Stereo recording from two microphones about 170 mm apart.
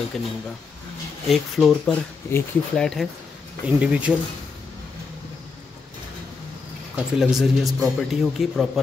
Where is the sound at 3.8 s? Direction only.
5° right (ahead or behind).